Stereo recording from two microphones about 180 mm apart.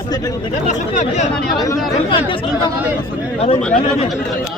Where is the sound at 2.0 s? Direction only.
30° left (ahead or behind).